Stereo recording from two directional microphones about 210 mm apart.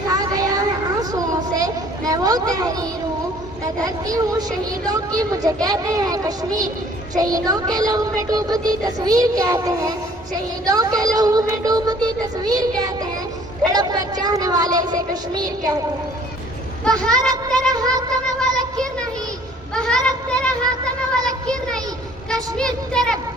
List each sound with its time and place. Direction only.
0.1 s a sound: 15° right (ahead or behind)
3.8 s speech: 15° right (ahead or behind)
13.7 s speech: 20° right (ahead or behind)
16.8 s speech: 5° left (ahead or behind)
17.1 s speech: 15° right (ahead or behind)
17.7 s cat: 15° right (ahead or behind)
18.3 s a sound: 5° left (ahead or behind)
22.5 s speech: 5° left (ahead or behind)